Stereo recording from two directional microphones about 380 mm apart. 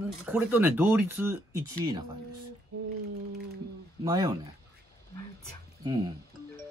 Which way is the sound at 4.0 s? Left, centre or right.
Centre.